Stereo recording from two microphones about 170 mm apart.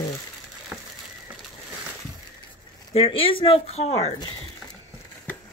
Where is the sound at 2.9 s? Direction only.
35° left (ahead or behind).